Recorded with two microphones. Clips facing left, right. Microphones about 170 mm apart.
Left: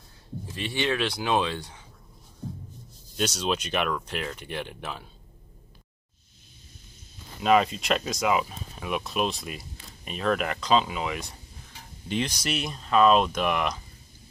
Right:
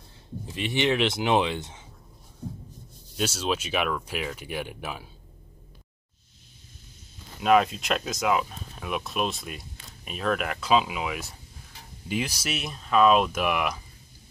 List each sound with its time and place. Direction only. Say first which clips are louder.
0.6 s speech: right 3 dB; 20° right (ahead or behind)
3.2 s speech: even; 5° right (ahead or behind)
7.4 s speech: even; centre (ahead or behind)